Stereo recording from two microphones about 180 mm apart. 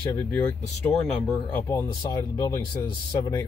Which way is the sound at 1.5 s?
15° left (ahead or behind).